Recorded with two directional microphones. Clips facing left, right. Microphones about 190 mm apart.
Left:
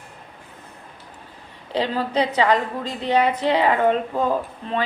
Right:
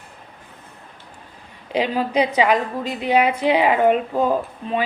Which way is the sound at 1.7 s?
15° right (ahead or behind).